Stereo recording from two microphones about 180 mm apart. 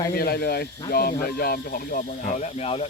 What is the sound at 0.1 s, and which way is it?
Speech, 60° left (ahead or behind).